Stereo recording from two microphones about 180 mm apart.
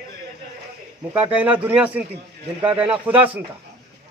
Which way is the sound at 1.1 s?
10° right (ahead or behind).